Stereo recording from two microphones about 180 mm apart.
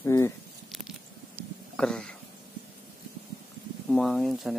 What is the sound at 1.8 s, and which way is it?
Speech, 5° left (ahead or behind).